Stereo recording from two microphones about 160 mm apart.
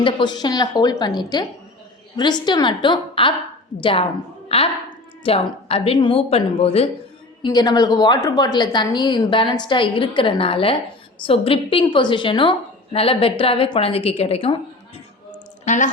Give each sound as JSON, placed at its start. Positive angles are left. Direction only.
{"t": 0.0, "sound": "a woman's voice", "side_deg": 30}
{"t": 7.4, "sound": "a woman's voice", "side_deg": 25}
{"t": 15.6, "sound": "speech", "side_deg": 50}